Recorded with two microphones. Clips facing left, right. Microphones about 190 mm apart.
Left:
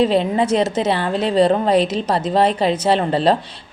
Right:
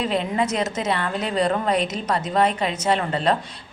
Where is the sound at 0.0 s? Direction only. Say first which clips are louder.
Left 7 dB; 30° left (ahead or behind).